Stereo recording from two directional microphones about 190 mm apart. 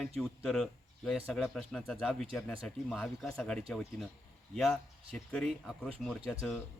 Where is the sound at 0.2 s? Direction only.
Centre (ahead or behind).